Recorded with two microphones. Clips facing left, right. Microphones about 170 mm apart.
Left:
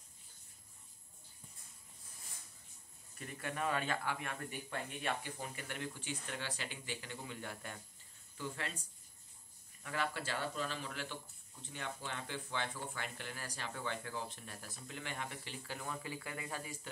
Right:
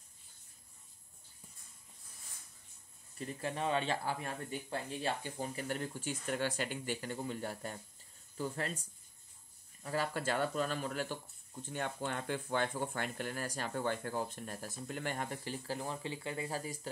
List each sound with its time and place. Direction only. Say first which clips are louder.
3.2 s speech: right 3 dB; 30° right (ahead or behind)
9.8 s speech: right 4 dB; 40° right (ahead or behind)